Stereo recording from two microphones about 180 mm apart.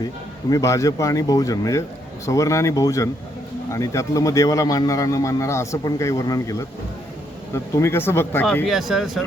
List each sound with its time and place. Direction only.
0.5 s speech: 15° left (ahead or behind)
8.6 s speech: centre (ahead or behind)